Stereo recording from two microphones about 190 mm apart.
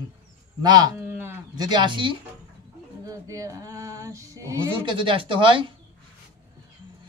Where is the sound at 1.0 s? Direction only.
10° right (ahead or behind).